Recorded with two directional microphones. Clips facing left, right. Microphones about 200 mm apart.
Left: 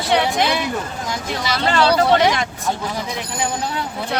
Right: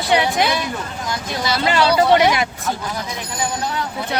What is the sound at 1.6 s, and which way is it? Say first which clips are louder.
Speech: even; 10° right (ahead or behind).